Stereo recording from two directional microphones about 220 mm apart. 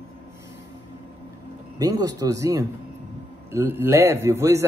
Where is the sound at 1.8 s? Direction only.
15° right (ahead or behind).